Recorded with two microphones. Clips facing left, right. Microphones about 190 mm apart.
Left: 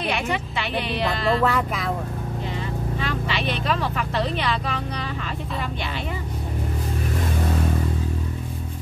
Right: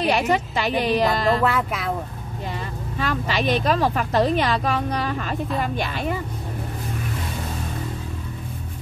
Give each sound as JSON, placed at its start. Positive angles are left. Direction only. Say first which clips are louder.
{"t": 0.0, "sound": "a woman's voice", "louder": "right 5 dB", "side_deg": -40}
{"t": 1.4, "sound": "speech", "louder": "even", "side_deg": -5}
{"t": 3.0, "sound": "speech", "louder": "right 6 dB", "side_deg": -45}